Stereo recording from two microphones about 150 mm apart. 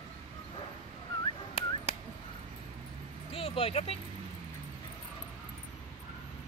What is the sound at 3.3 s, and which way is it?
Speech, 40° left (ahead or behind).